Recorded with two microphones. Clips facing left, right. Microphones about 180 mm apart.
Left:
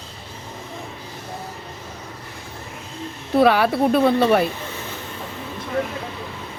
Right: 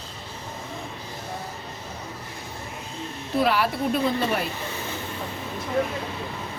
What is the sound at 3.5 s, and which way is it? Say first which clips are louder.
Speech: left 6 dB; 65° left (ahead or behind).